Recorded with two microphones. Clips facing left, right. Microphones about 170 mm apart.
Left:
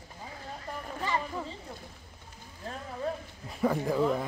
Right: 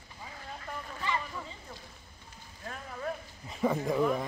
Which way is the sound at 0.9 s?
40° left (ahead or behind).